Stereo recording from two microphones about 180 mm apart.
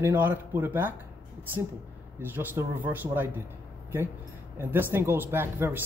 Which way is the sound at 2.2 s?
10° right (ahead or behind).